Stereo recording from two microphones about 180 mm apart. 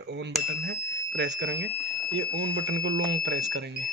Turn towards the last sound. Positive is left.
turn(degrees=-70)  # may be behind; listen again after turning